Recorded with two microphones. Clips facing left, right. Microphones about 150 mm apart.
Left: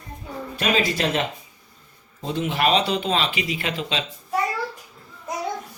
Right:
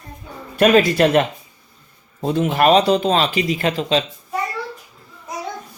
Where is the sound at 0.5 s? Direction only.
55° right (ahead or behind).